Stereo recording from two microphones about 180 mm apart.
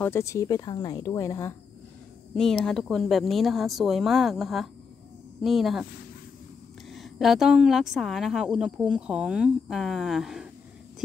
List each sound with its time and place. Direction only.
0.0 s speech: 15° left (ahead or behind)
2.3 s a woman's voice: centre (ahead or behind)
6.9 s a woman's voice: centre (ahead or behind)